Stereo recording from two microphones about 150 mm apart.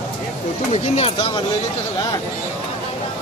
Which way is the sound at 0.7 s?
40° left (ahead or behind).